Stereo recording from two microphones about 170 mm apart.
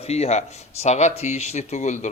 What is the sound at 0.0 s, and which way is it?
A man's voice, 40° left (ahead or behind).